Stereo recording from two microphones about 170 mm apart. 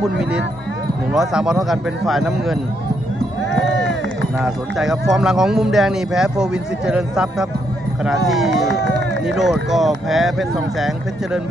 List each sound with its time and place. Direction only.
1.1 s speech: 5° right (ahead or behind)
3.5 s run: 80° right
4.4 s speech: 5° right (ahead or behind)
8.6 s speech: 80° right
9.2 s speech: 5° right (ahead or behind)